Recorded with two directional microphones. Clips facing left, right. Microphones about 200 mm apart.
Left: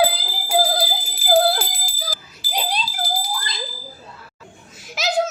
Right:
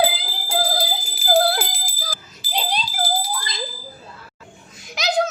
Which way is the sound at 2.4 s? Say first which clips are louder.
Even; 20° right (ahead or behind).